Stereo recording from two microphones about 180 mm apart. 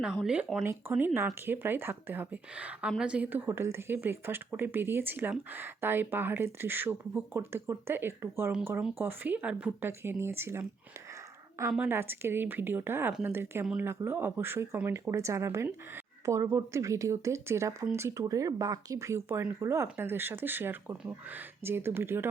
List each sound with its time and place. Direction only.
0.0 s speech: 5° right (ahead or behind)
11.7 s speech: 10° right (ahead or behind)